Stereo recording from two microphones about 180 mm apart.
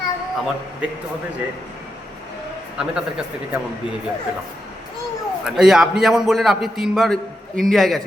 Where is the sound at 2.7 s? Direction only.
5° right (ahead or behind).